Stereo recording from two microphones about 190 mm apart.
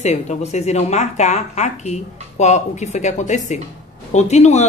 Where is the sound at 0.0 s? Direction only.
35° left (ahead or behind).